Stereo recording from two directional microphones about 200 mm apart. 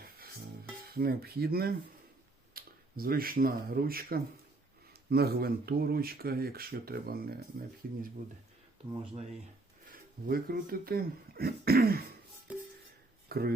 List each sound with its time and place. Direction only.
0.9 s speech: 50° right (ahead or behind)
9.9 s speech: 45° right (ahead or behind)
12.5 s music: 5° right (ahead or behind)
13.2 s a sound: 50° right (ahead or behind)